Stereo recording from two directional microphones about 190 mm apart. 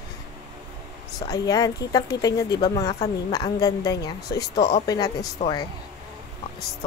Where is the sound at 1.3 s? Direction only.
20° left (ahead or behind).